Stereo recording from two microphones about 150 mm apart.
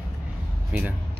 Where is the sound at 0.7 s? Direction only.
10° right (ahead or behind).